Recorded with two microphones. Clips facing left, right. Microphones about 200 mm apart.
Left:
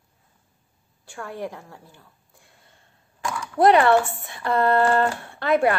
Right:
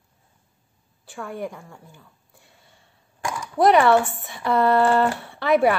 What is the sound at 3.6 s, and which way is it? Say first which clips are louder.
Speech: even; 55° left (ahead or behind).